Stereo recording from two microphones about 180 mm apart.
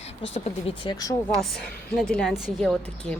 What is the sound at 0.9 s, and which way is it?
Speech, 20° left (ahead or behind).